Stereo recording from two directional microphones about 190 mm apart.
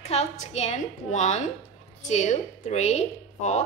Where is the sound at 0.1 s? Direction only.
35° left (ahead or behind).